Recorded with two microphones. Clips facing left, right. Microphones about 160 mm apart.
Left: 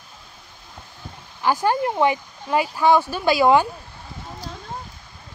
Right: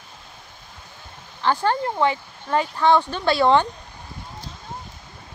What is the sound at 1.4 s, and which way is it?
Speech, 10° left (ahead or behind).